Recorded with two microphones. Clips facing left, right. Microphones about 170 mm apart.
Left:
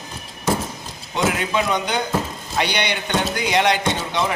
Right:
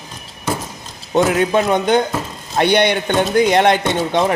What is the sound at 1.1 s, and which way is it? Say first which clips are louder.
Speech: right 7 dB; 50° right (ahead or behind).